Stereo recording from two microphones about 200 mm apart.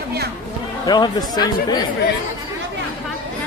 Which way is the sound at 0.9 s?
20° left (ahead or behind).